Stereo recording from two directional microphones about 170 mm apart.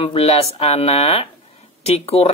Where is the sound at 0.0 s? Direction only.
35° left (ahead or behind).